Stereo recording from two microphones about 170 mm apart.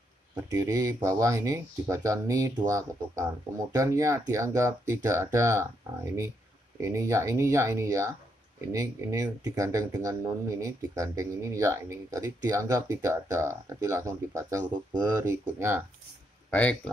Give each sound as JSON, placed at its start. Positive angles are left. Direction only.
{"t": 0.4, "sound": "speech", "side_deg": -20}
{"t": 16.4, "sound": "speech", "side_deg": 5}